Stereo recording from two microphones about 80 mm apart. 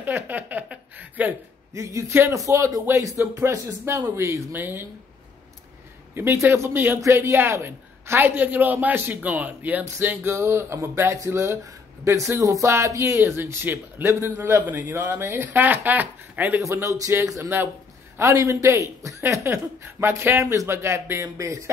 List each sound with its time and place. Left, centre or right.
0.0 s a woman's voice: right
1.7 s a woman's voice: right
6.1 s a woman's voice: right
16.6 s speech: right
18.2 s speech: right